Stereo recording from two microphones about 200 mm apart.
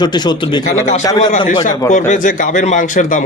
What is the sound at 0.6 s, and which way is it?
Speech, 35° left (ahead or behind).